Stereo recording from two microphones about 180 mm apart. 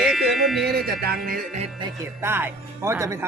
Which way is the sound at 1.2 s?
55° right (ahead or behind).